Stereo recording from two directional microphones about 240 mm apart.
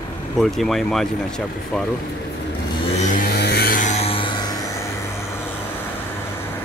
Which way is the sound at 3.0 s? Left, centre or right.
Left.